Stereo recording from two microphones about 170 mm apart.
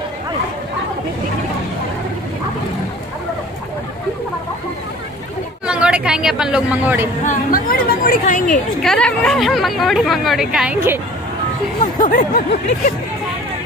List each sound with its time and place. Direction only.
5.7 s speech: 5° right (ahead or behind)
7.2 s a woman's voice: 55° left (ahead or behind)
8.8 s a woman's voice: 5° left (ahead or behind)
12.0 s snicker: 60° left (ahead or behind)